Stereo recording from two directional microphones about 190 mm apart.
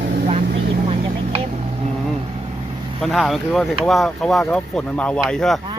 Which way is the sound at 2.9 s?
Centre (ahead or behind).